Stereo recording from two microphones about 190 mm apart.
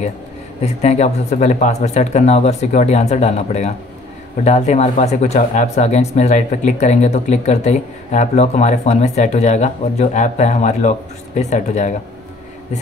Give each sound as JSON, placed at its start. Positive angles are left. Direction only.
{"t": 0.7, "sound": "speech", "side_deg": 35}